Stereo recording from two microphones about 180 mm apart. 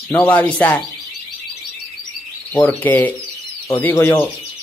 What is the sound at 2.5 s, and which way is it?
Speech, 10° left (ahead or behind).